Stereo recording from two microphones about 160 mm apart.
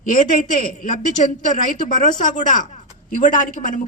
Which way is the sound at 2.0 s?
50° left (ahead or behind).